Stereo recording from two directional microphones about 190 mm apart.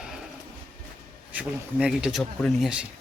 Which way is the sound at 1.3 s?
5° right (ahead or behind).